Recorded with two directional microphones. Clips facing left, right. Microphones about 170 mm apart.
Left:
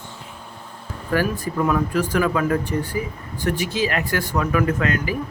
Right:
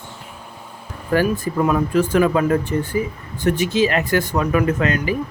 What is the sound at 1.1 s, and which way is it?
Speech, 25° right (ahead or behind).